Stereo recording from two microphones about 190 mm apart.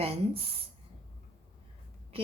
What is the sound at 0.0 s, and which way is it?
Speech, 30° right (ahead or behind).